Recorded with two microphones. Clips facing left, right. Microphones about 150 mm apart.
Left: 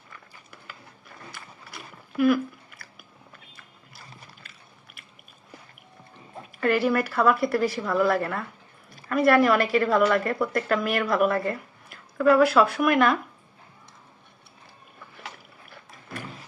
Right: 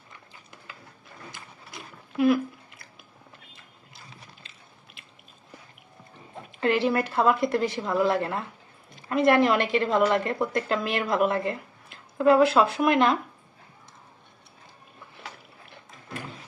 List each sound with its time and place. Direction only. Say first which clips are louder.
0.1 s a sound: left 1 dB; 20° right (ahead or behind)
1.3 s chewing: left 1 dB; 20° right (ahead or behind)
6.6 s a woman's voice: left 1 dB; 25° right (ahead or behind)